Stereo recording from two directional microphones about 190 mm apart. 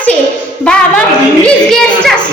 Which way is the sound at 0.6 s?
5° left (ahead or behind).